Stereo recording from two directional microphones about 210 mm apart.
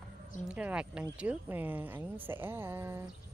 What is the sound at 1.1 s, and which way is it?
Speech, 5° right (ahead or behind).